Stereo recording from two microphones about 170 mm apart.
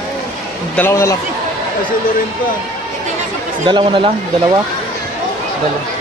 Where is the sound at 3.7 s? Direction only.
30° right (ahead or behind).